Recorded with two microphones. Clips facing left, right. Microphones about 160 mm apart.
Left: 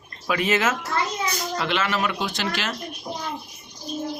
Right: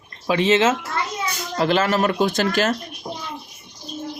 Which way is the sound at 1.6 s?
40° right (ahead or behind).